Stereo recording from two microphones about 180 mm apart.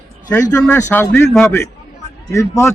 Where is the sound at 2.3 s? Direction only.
15° left (ahead or behind).